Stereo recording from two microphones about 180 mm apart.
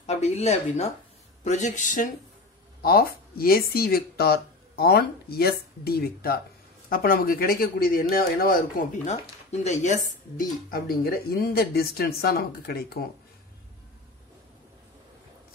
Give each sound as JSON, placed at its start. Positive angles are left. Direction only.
{"t": 0.0, "sound": "speech", "side_deg": 40}
{"t": 2.8, "sound": "speech", "side_deg": 55}
{"t": 9.0, "sound": "speech", "side_deg": 40}
{"t": 10.7, "sound": "speech", "side_deg": 55}